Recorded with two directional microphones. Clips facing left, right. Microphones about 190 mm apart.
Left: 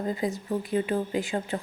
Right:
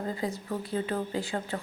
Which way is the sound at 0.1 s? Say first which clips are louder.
Left 4 dB; 15° left (ahead or behind).